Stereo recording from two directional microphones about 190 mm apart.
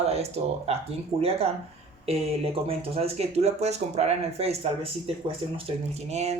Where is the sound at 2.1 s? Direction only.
30° right (ahead or behind).